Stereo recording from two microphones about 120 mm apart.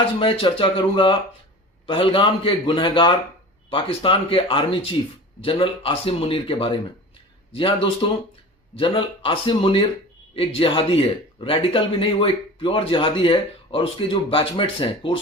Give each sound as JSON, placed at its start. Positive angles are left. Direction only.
{"t": 0.2, "sound": "speech", "side_deg": 45}